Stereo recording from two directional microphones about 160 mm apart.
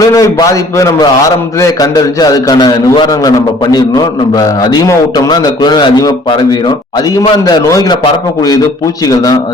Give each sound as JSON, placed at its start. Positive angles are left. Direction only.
{"t": 0.0, "sound": "a man's voice", "side_deg": 20}